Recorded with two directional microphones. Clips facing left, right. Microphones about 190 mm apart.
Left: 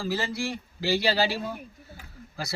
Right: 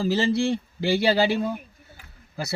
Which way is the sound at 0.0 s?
25° right (ahead or behind).